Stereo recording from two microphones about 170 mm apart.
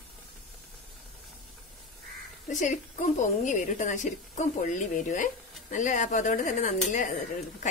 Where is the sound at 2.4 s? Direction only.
45° left (ahead or behind).